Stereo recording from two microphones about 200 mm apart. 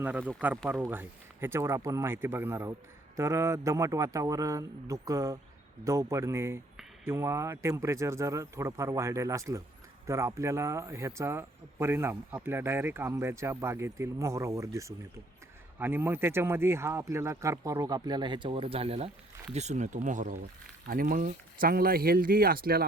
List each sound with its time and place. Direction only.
0.0 s speech: 10° right (ahead or behind); by 22.9 s 50° right (ahead or behind)